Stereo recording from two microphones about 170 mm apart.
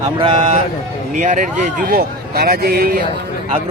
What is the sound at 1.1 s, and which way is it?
Speech, 50° right (ahead or behind).